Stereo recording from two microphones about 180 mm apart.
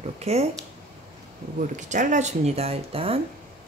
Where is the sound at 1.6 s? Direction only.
45° right (ahead or behind).